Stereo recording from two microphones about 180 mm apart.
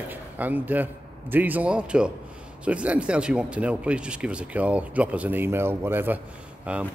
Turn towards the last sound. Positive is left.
turn(degrees=-5)  # may be behind; listen again after turning